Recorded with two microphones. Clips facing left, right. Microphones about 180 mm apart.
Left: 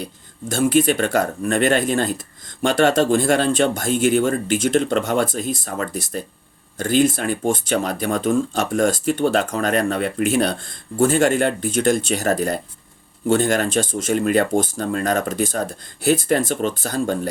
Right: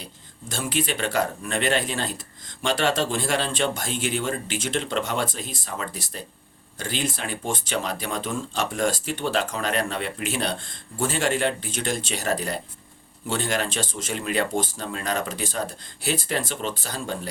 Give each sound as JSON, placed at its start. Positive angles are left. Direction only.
{"t": 0.0, "sound": "speech", "side_deg": 50}